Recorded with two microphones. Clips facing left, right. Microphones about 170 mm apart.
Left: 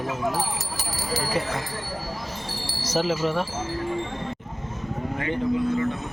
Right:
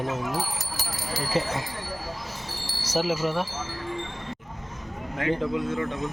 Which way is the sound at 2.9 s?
10° right (ahead or behind).